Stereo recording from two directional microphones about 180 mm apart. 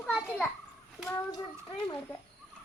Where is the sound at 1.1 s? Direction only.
20° left (ahead or behind).